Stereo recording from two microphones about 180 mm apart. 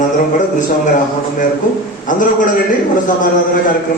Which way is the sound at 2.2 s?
45° left (ahead or behind).